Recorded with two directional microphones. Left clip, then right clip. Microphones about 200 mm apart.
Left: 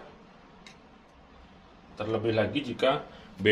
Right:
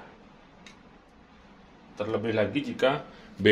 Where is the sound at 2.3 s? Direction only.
35° right (ahead or behind).